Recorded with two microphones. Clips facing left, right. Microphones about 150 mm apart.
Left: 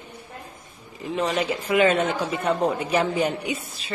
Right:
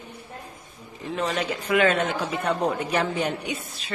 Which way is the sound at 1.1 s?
10° left (ahead or behind).